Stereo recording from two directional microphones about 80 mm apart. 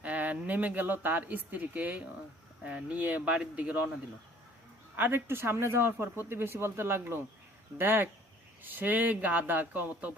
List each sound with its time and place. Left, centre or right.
0.0 s speech: centre
4.9 s speech: right